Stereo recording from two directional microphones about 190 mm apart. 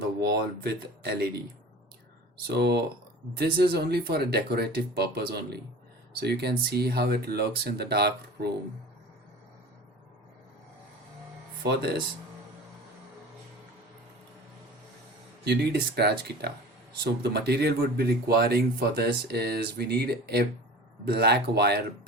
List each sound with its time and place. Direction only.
0.2 s speech: 55° right (ahead or behind)
2.5 s speech: 60° right (ahead or behind)
11.6 s speech: 55° right (ahead or behind)
15.4 s speech: 60° right (ahead or behind)